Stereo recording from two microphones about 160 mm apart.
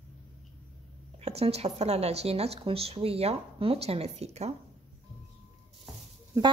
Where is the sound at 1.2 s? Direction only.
40° right (ahead or behind).